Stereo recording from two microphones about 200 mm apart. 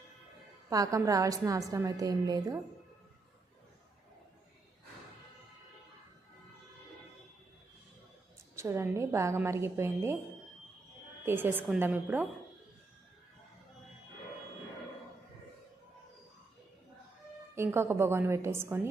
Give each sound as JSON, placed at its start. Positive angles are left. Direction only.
{"t": 0.7, "sound": "a woman's voice", "side_deg": -15}
{"t": 8.5, "sound": "a woman's voice", "side_deg": -15}
{"t": 11.3, "sound": "a woman's voice", "side_deg": -10}
{"t": 17.5, "sound": "a woman's voice", "side_deg": -10}